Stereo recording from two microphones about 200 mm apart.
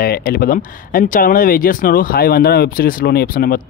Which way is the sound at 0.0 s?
50° left (ahead or behind).